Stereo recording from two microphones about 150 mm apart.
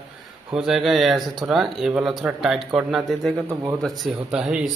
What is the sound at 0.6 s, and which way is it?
Speech, 5° right (ahead or behind).